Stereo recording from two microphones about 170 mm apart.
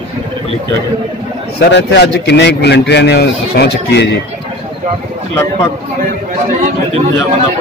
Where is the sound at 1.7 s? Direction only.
85° left.